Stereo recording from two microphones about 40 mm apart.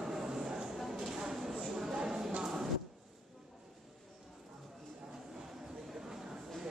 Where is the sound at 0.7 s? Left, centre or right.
Centre.